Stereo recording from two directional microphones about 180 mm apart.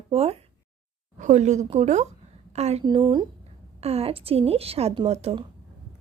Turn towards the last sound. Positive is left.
turn(degrees=-35)  # may be behind; listen again after turning